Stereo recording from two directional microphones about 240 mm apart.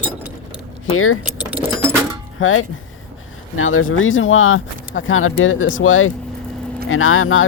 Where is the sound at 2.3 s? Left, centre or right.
Left.